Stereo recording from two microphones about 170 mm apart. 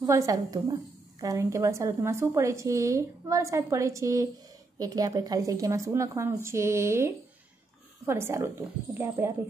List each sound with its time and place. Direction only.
0.0 s a woman's voice: 20° right (ahead or behind)